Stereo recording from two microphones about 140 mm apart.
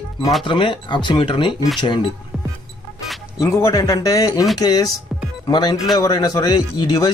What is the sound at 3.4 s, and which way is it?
Speech, 20° left (ahead or behind).